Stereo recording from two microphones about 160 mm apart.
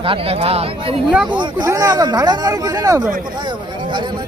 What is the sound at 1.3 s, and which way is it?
Speech, 30° right (ahead or behind).